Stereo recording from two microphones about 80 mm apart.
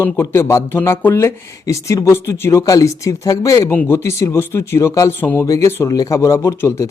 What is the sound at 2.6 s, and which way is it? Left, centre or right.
Speech, left.